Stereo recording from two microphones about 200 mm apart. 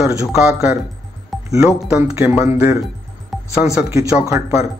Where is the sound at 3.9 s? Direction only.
15° right (ahead or behind).